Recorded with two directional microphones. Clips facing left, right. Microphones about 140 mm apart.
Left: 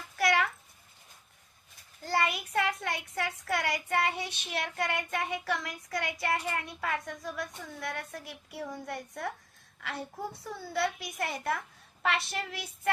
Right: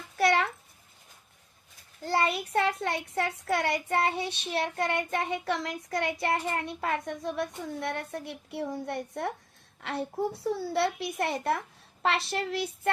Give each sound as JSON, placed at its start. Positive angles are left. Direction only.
{"t": 0.2, "sound": "a sound", "side_deg": -30}
{"t": 2.0, "sound": "child singing", "side_deg": -30}
{"t": 10.3, "sound": "a woman's voice", "side_deg": -30}